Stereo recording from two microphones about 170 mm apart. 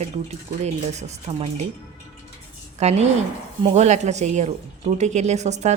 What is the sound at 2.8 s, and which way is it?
Speech, 40° right (ahead or behind).